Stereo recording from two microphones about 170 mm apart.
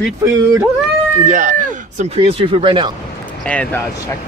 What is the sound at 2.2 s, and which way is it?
Speech, 35° right (ahead or behind).